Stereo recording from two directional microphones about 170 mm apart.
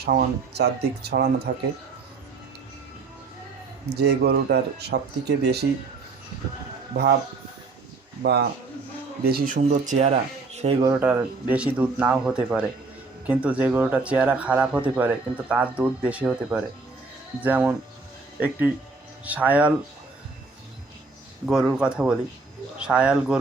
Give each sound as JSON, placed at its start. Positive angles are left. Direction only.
{"t": 0.0, "sound": "speech", "side_deg": -70}
{"t": 3.8, "sound": "speech", "side_deg": -75}
{"t": 6.9, "sound": "speech", "side_deg": -80}
{"t": 8.2, "sound": "speech", "side_deg": -70}
{"t": 9.6, "sound": "speech", "side_deg": -45}
{"t": 11.0, "sound": "speech", "side_deg": -10}
{"t": 21.4, "sound": "speech", "side_deg": -5}